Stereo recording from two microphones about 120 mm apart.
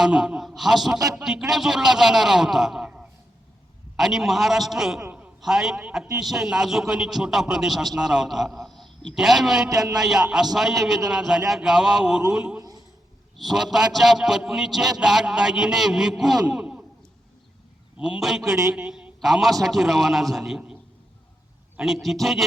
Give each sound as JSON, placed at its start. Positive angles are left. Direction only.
{"t": 0.0, "sound": "a man's voice", "side_deg": -5}
{"t": 5.0, "sound": "a sound", "side_deg": -15}
{"t": 5.4, "sound": "a man's voice", "side_deg": -5}
{"t": 9.6, "sound": "music", "side_deg": -30}
{"t": 10.0, "sound": "a man's voice", "side_deg": -5}
{"t": 16.5, "sound": "a sound", "side_deg": -10}
{"t": 17.9, "sound": "a man's voice", "side_deg": -5}
{"t": 18.4, "sound": "a man's voice", "side_deg": -25}
{"t": 18.7, "sound": "a man's voice", "side_deg": -5}
{"t": 21.8, "sound": "a man's voice", "side_deg": 0}